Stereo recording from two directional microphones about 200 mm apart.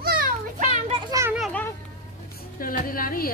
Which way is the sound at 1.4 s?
10° left (ahead or behind).